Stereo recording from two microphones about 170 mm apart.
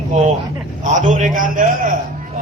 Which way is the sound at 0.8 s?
45° right (ahead or behind).